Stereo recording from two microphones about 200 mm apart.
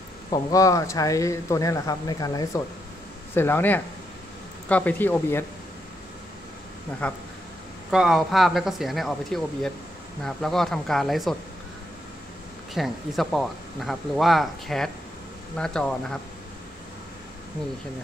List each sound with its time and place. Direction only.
0.3 s speech: 15° left (ahead or behind)
7.0 s speech: 5° left (ahead or behind)
12.7 s speech: centre (ahead or behind)